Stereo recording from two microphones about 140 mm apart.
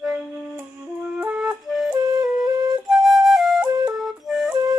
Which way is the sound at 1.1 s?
10° right (ahead or behind).